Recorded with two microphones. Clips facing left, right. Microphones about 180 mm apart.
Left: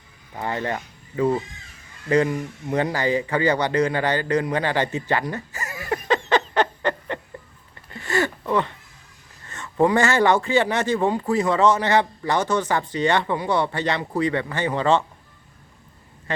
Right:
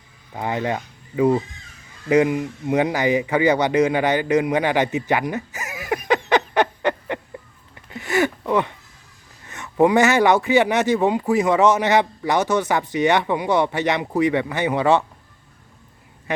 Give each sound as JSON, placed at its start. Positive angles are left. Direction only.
{"t": 0.3, "sound": "speech", "side_deg": -15}
{"t": 6.2, "sound": "a sound", "side_deg": -15}
{"t": 9.5, "sound": "speech", "side_deg": -15}